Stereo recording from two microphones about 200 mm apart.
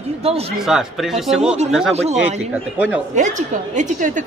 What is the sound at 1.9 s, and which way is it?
Speech, 30° right (ahead or behind).